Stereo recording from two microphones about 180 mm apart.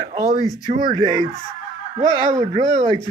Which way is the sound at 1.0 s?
20° left (ahead or behind).